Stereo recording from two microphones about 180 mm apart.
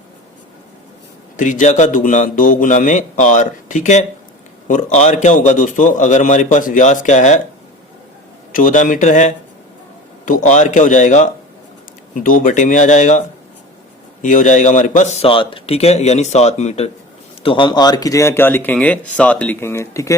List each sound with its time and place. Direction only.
1.4 s a man's voice: 45° left (ahead or behind)
8.5 s a man's voice: 45° left (ahead or behind); by 20.1 s 15° left (ahead or behind)